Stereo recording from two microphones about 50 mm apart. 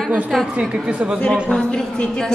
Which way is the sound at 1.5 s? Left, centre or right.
Centre.